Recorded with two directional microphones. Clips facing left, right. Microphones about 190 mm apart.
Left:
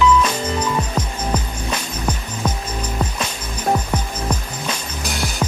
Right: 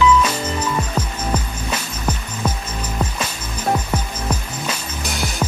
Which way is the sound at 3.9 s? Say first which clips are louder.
Even; 5° right (ahead or behind).